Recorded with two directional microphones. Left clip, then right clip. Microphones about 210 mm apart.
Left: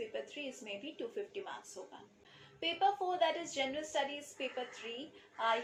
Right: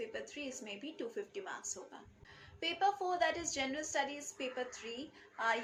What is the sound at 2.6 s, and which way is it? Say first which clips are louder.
A woman's voice: left 1 dB; 20° right (ahead or behind).